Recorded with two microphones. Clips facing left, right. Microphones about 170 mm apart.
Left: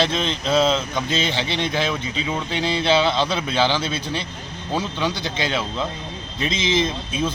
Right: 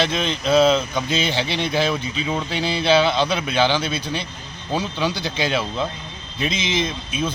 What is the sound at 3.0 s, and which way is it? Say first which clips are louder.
Speech: right 1 dB; 5° right (ahead or behind).